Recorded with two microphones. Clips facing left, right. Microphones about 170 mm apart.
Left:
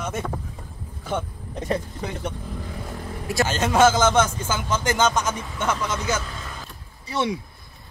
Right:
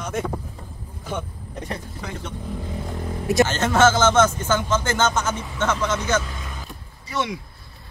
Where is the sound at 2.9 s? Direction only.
20° right (ahead or behind).